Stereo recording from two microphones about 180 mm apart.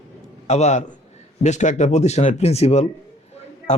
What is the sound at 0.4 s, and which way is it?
A man's voice, 40° left (ahead or behind).